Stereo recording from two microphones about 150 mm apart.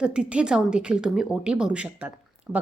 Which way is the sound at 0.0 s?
5° right (ahead or behind).